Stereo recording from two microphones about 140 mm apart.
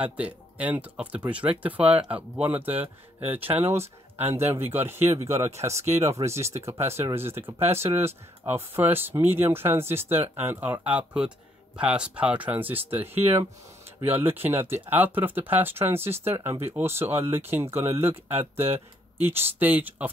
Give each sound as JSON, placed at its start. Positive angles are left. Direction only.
{"t": 0.0, "sound": "speech", "side_deg": -10}